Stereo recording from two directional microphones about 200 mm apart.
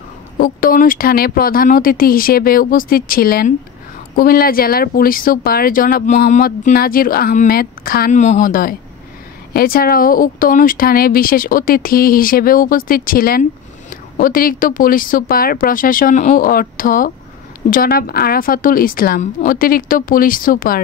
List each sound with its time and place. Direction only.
0.4 s speech: 45° left (ahead or behind)